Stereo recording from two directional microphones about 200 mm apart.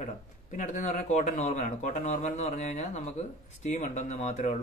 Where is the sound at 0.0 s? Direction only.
40° left (ahead or behind).